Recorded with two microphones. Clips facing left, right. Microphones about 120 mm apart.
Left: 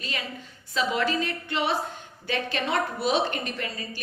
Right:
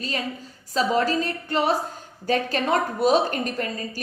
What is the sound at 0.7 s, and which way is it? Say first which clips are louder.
A woman's voice: right 4 dB; 40° right (ahead or behind).